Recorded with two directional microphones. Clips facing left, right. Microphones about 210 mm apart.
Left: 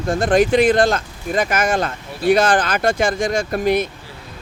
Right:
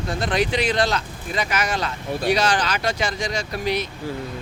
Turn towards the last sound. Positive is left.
turn(degrees=50)  # may be behind; listen again after turning